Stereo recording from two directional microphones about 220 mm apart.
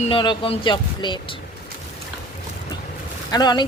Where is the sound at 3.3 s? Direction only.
20° left (ahead or behind).